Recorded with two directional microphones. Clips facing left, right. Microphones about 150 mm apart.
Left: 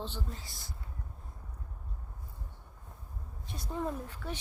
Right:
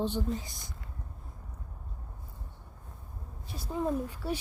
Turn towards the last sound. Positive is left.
turn(degrees=-10)  # may be behind; listen again after turning